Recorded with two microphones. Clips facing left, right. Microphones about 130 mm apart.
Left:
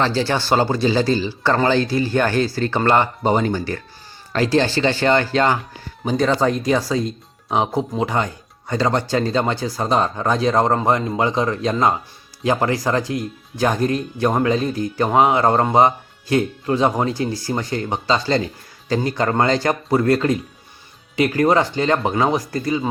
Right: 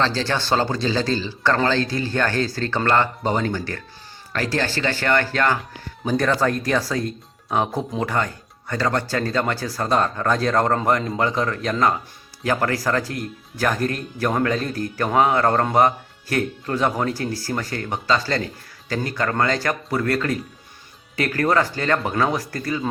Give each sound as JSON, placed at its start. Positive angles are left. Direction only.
{"t": 0.0, "sound": "speech", "side_deg": 10}